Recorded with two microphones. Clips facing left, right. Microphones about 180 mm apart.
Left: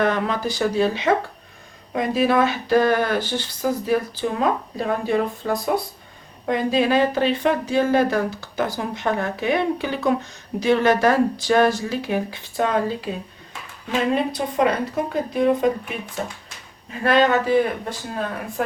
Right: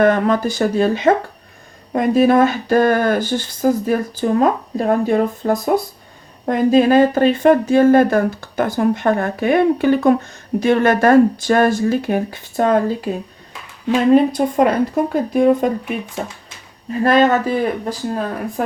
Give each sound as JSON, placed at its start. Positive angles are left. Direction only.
{"t": 0.0, "sound": "speech", "side_deg": -50}
{"t": 14.1, "sound": "speech", "side_deg": -45}
{"t": 17.0, "sound": "speech", "side_deg": -45}